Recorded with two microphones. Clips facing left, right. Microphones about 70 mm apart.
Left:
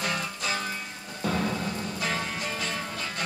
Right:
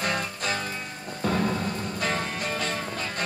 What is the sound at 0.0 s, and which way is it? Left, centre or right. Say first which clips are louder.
Music: right 2 dB; right.